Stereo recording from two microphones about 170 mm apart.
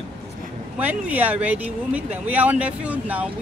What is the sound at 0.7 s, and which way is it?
Speech, 10° right (ahead or behind).